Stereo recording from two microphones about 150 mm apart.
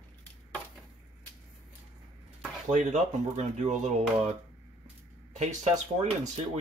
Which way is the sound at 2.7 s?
55° right (ahead or behind).